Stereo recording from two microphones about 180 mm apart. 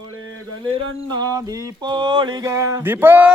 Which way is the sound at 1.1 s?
20° right (ahead or behind).